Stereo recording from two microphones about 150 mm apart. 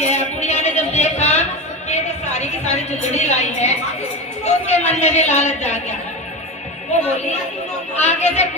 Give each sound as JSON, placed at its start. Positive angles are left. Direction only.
{"t": 0.0, "sound": "a sound", "side_deg": 50}
{"t": 4.4, "sound": "a woman's voice", "side_deg": 50}
{"t": 8.0, "sound": "a woman's voice", "side_deg": 50}